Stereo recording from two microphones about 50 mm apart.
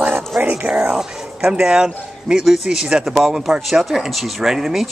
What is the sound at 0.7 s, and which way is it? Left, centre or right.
Speech, centre.